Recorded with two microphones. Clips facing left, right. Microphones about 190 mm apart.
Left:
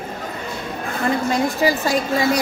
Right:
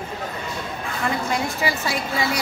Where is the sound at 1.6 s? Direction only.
40° left (ahead or behind).